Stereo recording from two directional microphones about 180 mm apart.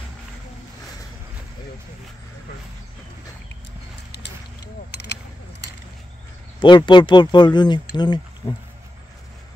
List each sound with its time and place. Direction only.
4.9 s speech: 70° left (ahead or behind)
6.6 s speech: 25° left (ahead or behind)